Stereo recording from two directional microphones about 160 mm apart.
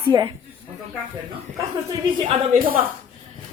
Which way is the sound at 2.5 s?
65° right (ahead or behind).